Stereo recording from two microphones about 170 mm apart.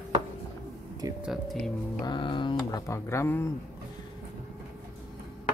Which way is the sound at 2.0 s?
30° left (ahead or behind).